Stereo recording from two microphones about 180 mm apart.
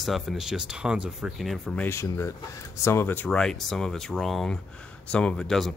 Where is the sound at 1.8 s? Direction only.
15° left (ahead or behind).